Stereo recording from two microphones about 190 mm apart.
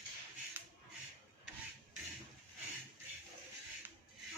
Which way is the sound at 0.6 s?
10° right (ahead or behind).